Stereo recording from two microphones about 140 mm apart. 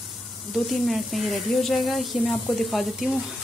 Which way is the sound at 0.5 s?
Centre (ahead or behind).